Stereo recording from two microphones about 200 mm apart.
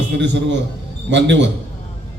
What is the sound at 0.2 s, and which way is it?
A man's voice, 65° right (ahead or behind).